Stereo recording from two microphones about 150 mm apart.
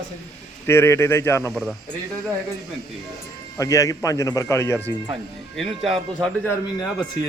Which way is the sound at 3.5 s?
20° left (ahead or behind).